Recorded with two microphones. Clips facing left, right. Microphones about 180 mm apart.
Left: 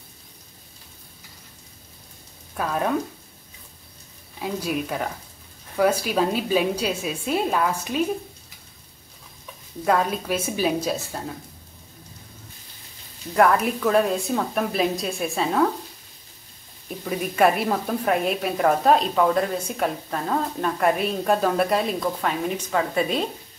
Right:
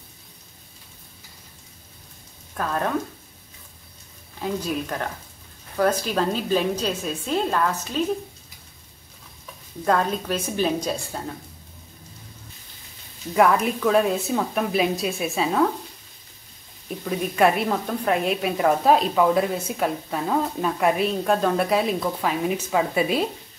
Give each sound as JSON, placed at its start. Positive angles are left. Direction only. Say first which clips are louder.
{"t": 2.5, "sound": "a woman's voice", "louder": "left 1 dB", "side_deg": 5}
{"t": 4.4, "sound": "a woman's voice", "louder": "even", "side_deg": 10}
{"t": 9.8, "sound": "a woman's voice", "louder": "even", "side_deg": 5}
{"t": 13.3, "sound": "a woman's voice", "louder": "even", "side_deg": 0}
{"t": 17.0, "sound": "a woman's voice", "louder": "even", "side_deg": 0}